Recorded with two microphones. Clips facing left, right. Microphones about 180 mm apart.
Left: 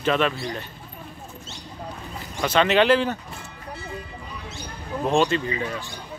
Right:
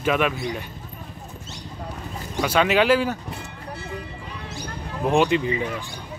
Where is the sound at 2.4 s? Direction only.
10° right (ahead or behind).